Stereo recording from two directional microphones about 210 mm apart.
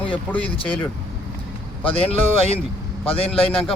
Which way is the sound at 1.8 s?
25° left (ahead or behind).